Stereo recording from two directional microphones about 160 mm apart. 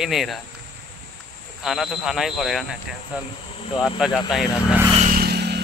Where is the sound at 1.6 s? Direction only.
5° right (ahead or behind).